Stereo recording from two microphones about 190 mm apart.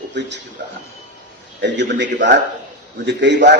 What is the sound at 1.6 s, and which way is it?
A man's voice, 65° right (ahead or behind).